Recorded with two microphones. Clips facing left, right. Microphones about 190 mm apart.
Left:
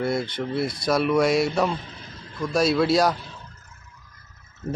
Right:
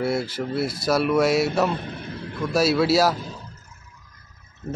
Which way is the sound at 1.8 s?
60° right (ahead or behind).